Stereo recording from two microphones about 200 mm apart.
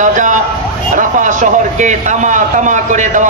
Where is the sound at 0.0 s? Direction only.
40° right (ahead or behind).